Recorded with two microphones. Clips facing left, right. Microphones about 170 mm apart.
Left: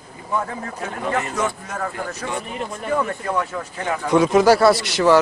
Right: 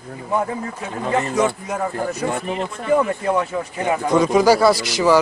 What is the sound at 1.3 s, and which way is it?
Speech, 15° right (ahead or behind).